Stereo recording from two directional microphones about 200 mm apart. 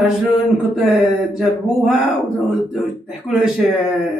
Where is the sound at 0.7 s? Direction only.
Centre (ahead or behind).